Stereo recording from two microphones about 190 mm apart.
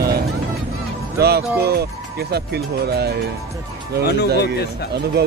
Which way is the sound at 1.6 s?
55° right (ahead or behind).